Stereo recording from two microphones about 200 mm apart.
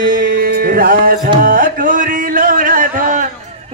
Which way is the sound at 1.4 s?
45° right (ahead or behind).